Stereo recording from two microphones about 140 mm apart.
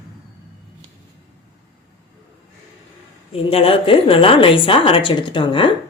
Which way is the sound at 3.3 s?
45° left (ahead or behind).